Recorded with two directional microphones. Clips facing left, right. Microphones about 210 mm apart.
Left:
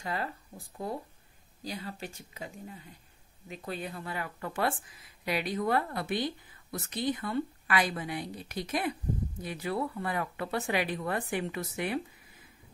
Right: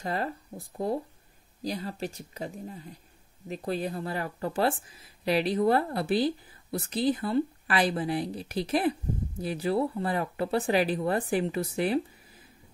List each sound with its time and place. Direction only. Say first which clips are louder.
0.0 s speech: right 4 dB; 40° right (ahead or behind)